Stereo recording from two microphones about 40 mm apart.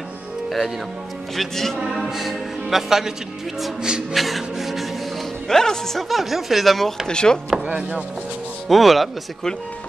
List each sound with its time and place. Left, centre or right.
1.3 s speech: centre
2.0 s speech: centre
4.1 s speech: centre
5.5 s speech: centre
6.0 s speech: centre
7.1 s chopping: left
7.6 s speech: right
8.6 s speech: centre